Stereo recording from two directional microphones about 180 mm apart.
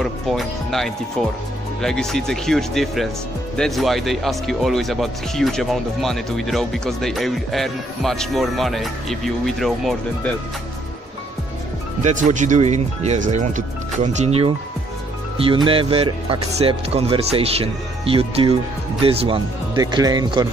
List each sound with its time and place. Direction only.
0.0 s speech: centre (ahead or behind)
12.0 s speech: 40° right (ahead or behind); by 20.4 s 20° right (ahead or behind)